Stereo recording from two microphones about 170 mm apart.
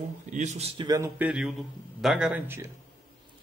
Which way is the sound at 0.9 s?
15° right (ahead or behind).